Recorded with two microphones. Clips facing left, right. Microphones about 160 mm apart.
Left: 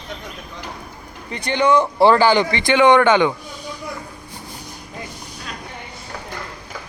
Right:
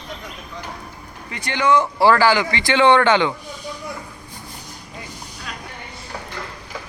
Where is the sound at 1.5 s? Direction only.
15° left (ahead or behind).